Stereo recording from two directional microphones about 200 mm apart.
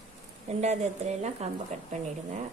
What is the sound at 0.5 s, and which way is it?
A woman's voice, 35° right (ahead or behind).